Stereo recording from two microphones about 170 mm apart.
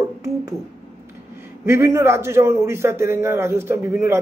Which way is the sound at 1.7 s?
15° right (ahead or behind).